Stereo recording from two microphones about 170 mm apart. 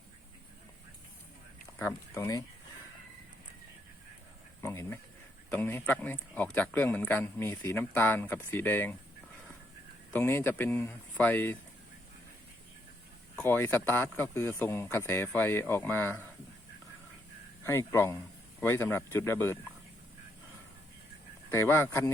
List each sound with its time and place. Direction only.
1.8 s speech: 15° left (ahead or behind)
4.6 s speech: 15° left (ahead or behind)
10.1 s speech: 15° left (ahead or behind)
13.3 s speech: 10° left (ahead or behind)
17.6 s speech: 15° left (ahead or behind)
21.5 s speech: 15° left (ahead or behind)